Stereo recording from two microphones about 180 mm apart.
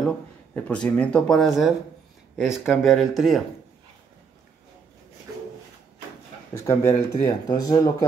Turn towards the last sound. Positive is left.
turn(degrees=20)  # may be behind; listen again after turning